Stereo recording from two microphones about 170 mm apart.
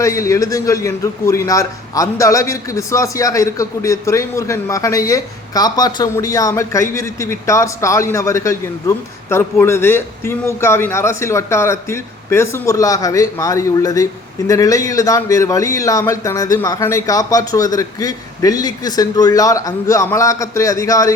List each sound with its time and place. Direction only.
0.0 s a man's voice: 20° left (ahead or behind)